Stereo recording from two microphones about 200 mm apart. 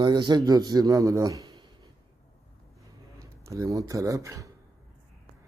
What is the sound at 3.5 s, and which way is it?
Speech, 15° right (ahead or behind).